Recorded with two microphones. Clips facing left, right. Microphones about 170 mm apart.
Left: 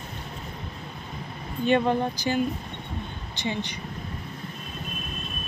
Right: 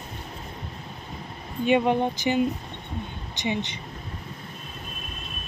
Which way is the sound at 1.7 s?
15° right (ahead or behind).